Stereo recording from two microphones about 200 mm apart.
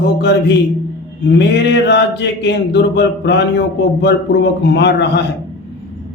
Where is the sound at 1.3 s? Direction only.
60° left (ahead or behind).